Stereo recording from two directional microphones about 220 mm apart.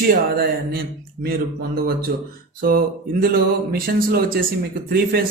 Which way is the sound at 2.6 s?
40° right (ahead or behind).